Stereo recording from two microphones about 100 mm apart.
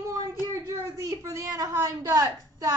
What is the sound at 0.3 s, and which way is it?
Speech, 30° right (ahead or behind).